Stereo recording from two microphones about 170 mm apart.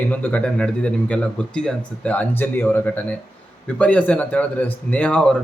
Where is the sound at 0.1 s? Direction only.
10° left (ahead or behind).